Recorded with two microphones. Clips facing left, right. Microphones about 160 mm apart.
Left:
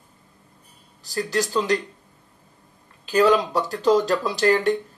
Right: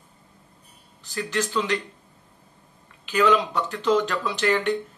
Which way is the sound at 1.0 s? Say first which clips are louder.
Left 3 dB; 35° left (ahead or behind).